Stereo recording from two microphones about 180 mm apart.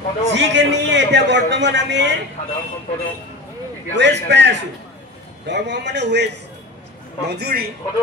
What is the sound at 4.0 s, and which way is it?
A man's voice, 75° right (ahead or behind).